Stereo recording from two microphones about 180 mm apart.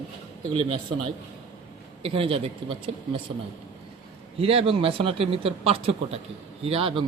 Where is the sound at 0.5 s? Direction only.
35° right (ahead or behind).